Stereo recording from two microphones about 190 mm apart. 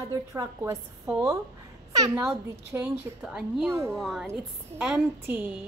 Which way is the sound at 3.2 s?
5° right (ahead or behind).